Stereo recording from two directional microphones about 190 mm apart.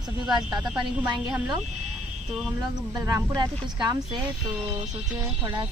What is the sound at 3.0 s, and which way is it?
Speech, 15° right (ahead or behind).